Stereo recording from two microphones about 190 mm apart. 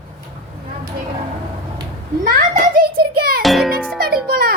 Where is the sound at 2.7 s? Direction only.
55° right (ahead or behind).